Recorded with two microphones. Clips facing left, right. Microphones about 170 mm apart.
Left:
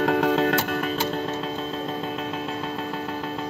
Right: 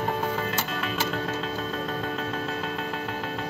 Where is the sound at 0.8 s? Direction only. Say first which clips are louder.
Left 3 dB; 30° left (ahead or behind).